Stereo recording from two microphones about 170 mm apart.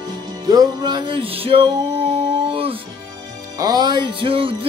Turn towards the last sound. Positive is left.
turn(degrees=-30)  # may be behind; listen again after turning